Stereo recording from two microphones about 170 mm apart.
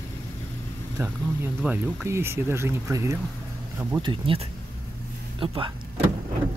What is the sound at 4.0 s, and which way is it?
Speech, 30° right (ahead or behind).